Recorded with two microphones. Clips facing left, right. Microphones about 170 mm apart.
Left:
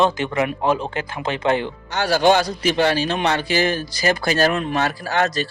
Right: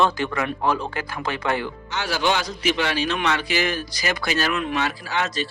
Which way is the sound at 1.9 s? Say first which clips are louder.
Left 8 dB; 40° left (ahead or behind).